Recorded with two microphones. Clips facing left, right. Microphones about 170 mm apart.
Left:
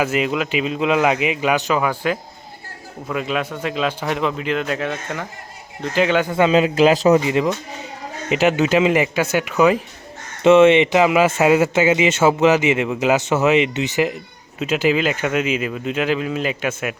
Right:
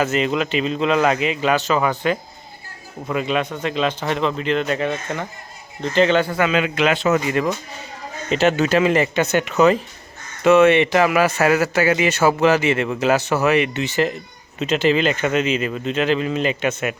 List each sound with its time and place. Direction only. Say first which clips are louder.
0.0 s a man's voice: even; 10° left (ahead or behind)
6.3 s a man's voice: left 4 dB; 30° left (ahead or behind)
7.2 s speech: left 2 dB; 20° left (ahead or behind)
10.4 s speech: left 2 dB; 25° left (ahead or behind); by 16.9 s 5° left (ahead or behind)